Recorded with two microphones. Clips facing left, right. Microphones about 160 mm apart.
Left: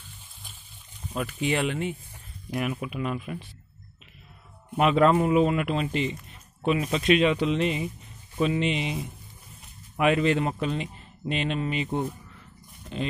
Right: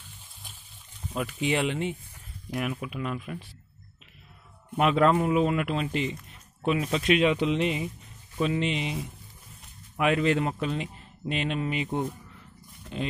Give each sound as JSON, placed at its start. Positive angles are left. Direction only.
{"t": 1.1, "sound": "speech", "side_deg": -15}
{"t": 2.5, "sound": "speech", "side_deg": 5}
{"t": 4.7, "sound": "speech", "side_deg": 0}